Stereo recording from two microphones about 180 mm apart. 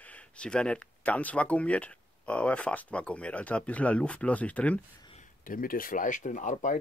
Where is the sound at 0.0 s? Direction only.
5° left (ahead or behind).